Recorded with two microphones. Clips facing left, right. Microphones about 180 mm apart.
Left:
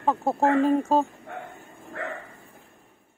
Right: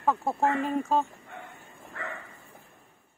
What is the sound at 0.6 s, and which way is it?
Speech, 35° left (ahead or behind).